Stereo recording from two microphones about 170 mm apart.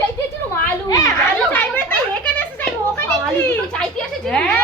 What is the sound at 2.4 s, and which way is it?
Children playing, 10° left (ahead or behind).